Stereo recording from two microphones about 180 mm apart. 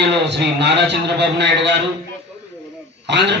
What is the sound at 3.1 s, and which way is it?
Speech, 75° right (ahead or behind).